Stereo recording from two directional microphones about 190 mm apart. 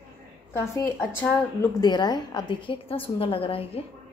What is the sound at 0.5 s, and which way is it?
A woman's voice, 15° left (ahead or behind).